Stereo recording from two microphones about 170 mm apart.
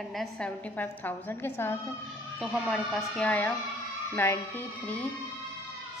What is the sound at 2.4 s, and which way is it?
A woman's voice, centre (ahead or behind).